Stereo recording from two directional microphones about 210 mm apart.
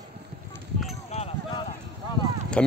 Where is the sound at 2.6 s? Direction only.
5° left (ahead or behind).